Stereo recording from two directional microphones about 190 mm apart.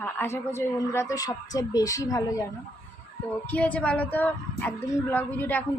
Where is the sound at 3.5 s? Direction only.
10° left (ahead or behind).